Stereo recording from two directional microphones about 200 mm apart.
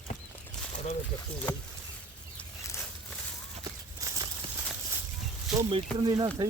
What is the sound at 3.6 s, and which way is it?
Walk, 20° right (ahead or behind).